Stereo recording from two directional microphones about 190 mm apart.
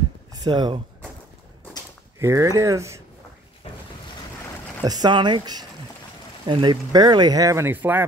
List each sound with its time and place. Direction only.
0.3 s speech: 20° right (ahead or behind)
2.1 s speech: 15° right (ahead or behind)
4.8 s speech: 20° right (ahead or behind)